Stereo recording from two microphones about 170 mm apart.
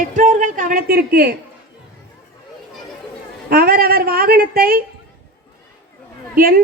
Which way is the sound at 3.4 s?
60° right (ahead or behind).